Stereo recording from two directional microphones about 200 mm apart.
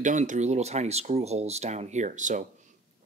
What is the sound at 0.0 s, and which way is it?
Speech, 40° right (ahead or behind).